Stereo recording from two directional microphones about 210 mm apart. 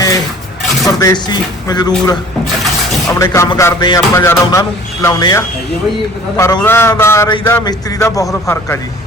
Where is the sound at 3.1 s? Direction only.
15° left (ahead or behind).